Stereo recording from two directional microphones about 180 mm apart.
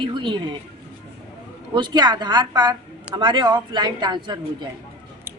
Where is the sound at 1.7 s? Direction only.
25° right (ahead or behind).